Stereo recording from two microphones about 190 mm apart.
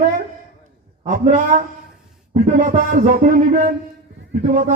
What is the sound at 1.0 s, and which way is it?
A man's voice, 45° right (ahead or behind).